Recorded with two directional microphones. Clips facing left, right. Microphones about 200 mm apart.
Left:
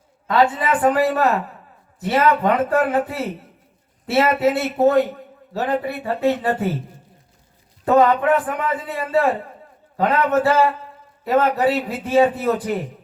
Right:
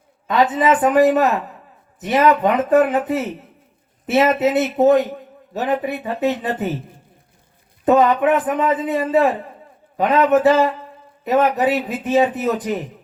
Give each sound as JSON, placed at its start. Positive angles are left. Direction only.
{"t": 0.3, "sound": "a man's voice", "side_deg": -20}
{"t": 7.9, "sound": "a man's voice", "side_deg": -20}